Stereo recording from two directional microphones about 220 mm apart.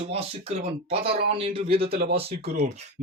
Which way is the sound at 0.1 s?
25° right (ahead or behind).